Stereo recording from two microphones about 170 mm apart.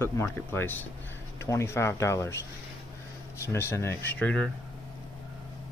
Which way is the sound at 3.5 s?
15° left (ahead or behind).